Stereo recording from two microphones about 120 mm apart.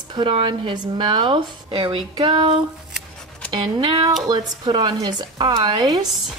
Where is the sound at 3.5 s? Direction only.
45° right (ahead or behind).